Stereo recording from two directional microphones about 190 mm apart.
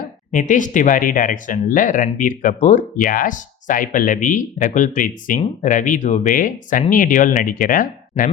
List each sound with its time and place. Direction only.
0.3 s speech: 40° left (ahead or behind)